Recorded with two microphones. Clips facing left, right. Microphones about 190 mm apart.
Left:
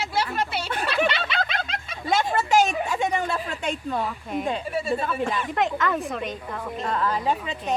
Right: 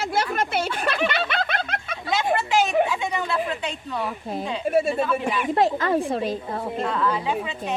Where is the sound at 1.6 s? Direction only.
55° right (ahead or behind).